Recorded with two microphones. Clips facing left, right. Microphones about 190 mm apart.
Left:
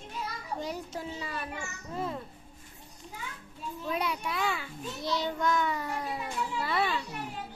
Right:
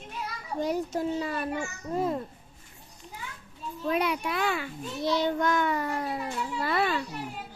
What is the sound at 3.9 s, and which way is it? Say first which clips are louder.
A child's voice: right 5 dB; 65° right (ahead or behind).